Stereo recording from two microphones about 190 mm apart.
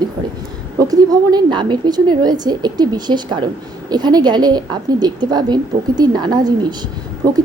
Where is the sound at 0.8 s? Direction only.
20° right (ahead or behind).